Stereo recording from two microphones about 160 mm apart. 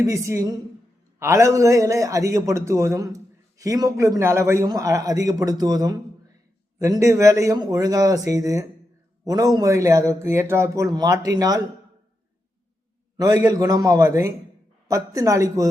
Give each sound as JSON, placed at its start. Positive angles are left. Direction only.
{"t": 0.0, "sound": "speech", "side_deg": -20}
{"t": 13.1, "sound": "speech", "side_deg": -20}